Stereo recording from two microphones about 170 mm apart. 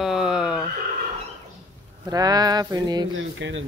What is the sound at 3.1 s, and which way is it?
Speech, 90° right.